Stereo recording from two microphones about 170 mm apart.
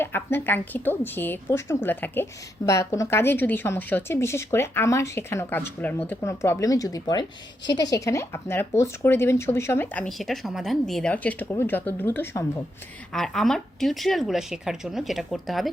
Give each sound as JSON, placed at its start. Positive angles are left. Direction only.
{"t": 0.0, "sound": "speech", "side_deg": 10}
{"t": 13.1, "sound": "speech", "side_deg": 0}